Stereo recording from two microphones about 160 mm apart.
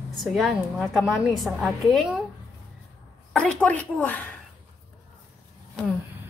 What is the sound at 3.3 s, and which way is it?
Speech, 5° left (ahead or behind).